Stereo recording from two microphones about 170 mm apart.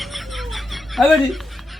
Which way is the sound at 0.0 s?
Centre (ahead or behind).